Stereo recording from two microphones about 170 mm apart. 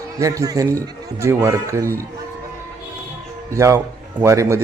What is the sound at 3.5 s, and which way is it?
A man's voice, 15° right (ahead or behind).